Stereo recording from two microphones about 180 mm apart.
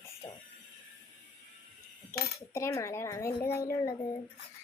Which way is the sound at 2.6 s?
15° left (ahead or behind).